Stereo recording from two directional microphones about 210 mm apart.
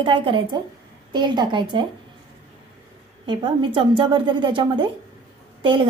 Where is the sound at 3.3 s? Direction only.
25° right (ahead or behind).